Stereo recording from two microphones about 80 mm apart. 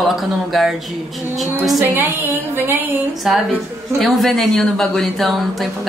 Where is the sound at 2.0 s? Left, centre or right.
Right.